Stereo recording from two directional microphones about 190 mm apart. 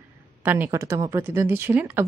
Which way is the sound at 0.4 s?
10° right (ahead or behind).